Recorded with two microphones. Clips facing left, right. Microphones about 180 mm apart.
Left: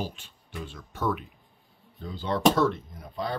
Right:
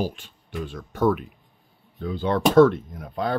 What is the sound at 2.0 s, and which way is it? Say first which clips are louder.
Speech: right 5 dB; 60° right (ahead or behind).